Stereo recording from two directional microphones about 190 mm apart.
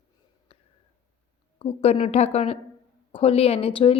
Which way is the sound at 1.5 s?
30° left (ahead or behind).